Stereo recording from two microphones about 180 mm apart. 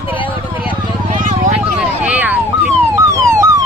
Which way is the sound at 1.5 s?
5° right (ahead or behind).